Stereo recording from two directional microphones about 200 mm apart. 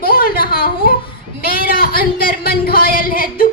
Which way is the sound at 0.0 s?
45° left (ahead or behind).